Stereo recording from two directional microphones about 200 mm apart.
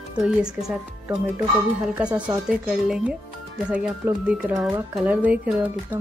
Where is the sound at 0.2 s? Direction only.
Centre (ahead or behind).